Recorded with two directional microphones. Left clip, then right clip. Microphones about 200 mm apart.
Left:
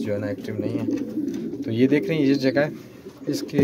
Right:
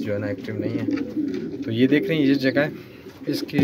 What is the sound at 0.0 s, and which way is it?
Speech, 5° right (ahead or behind).